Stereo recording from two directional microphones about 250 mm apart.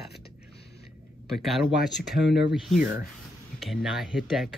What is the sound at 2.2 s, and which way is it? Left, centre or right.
Speech, left.